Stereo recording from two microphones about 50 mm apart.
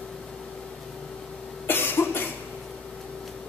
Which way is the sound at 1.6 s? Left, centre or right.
Left.